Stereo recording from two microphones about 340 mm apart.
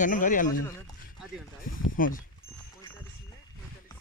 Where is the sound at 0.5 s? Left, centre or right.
Centre.